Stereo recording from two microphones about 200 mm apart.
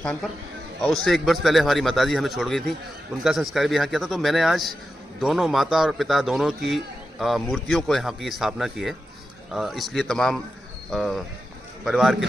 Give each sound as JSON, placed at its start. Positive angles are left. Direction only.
{"t": 0.0, "sound": "a man's voice", "side_deg": 5}